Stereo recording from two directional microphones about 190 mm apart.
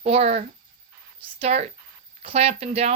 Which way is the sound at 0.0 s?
35° right (ahead or behind).